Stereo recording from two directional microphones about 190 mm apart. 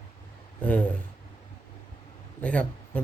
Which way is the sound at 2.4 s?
5° left (ahead or behind).